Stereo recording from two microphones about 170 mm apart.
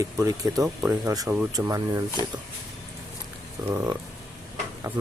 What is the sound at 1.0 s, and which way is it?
Speech, 20° right (ahead or behind).